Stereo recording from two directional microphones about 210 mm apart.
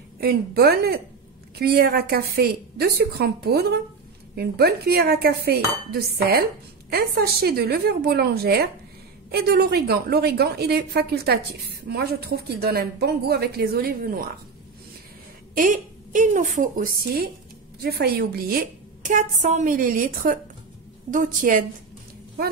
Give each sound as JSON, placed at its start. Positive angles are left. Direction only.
{"t": 0.2, "sound": "speech", "side_deg": -50}
{"t": 15.5, "sound": "a woman's voice", "side_deg": -40}